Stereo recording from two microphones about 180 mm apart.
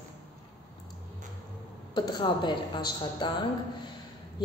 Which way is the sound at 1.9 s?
25° left (ahead or behind).